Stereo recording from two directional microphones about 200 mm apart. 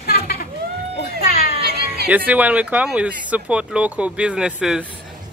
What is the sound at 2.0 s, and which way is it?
Speech, 10° right (ahead or behind).